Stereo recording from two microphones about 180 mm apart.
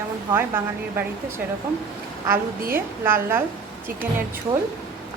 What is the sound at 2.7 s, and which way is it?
Speech, 15° right (ahead or behind).